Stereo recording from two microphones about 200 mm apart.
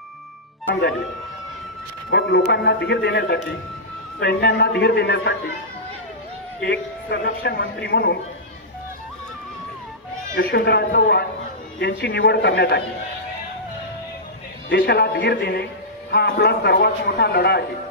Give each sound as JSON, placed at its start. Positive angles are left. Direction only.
{"t": 2.0, "sound": "a man's voice", "side_deg": 55}
{"t": 6.6, "sound": "a man's voice", "side_deg": 55}
{"t": 10.3, "sound": "a man's voice", "side_deg": 55}
{"t": 14.7, "sound": "a man's voice", "side_deg": 55}